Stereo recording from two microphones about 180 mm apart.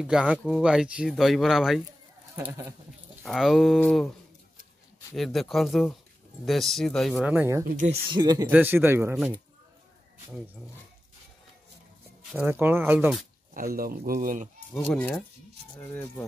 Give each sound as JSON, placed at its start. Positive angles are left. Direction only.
{"t": 0.0, "sound": "speech", "side_deg": -5}
{"t": 2.3, "sound": "speech", "side_deg": -15}
{"t": 3.3, "sound": "speech", "side_deg": 0}
{"t": 5.1, "sound": "speech", "side_deg": 0}
{"t": 7.6, "sound": "speech", "side_deg": -45}
{"t": 8.1, "sound": "speech", "side_deg": -20}
{"t": 8.5, "sound": "speech", "side_deg": -10}
{"t": 12.3, "sound": "speech", "side_deg": -10}
{"t": 13.7, "sound": "speech", "side_deg": -55}
{"t": 14.7, "sound": "speech", "side_deg": 10}